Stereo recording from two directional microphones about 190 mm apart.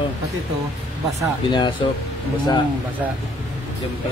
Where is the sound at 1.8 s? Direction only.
25° left (ahead or behind).